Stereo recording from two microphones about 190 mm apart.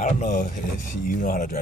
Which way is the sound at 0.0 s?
40° left (ahead or behind).